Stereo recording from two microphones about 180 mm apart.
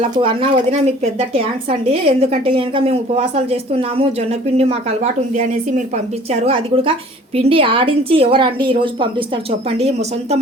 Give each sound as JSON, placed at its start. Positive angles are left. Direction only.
{"t": 0.0, "sound": "a woman's voice", "side_deg": -30}
{"t": 1.9, "sound": "a woman's voice", "side_deg": -35}
{"t": 6.4, "sound": "a woman's voice", "side_deg": -30}